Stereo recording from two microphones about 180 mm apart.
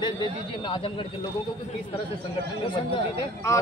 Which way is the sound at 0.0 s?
25° left (ahead or behind).